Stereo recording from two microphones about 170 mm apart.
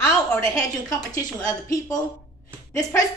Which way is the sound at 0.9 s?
20° left (ahead or behind).